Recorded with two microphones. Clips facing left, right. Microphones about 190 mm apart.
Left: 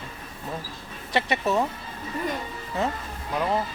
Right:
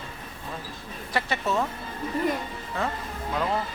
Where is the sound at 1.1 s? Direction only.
20° left (ahead or behind).